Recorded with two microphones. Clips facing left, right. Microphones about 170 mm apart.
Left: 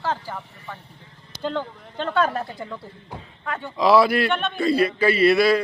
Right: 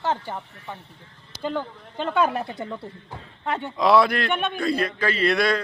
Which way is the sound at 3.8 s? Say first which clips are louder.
Left 2 dB; centre (ahead or behind).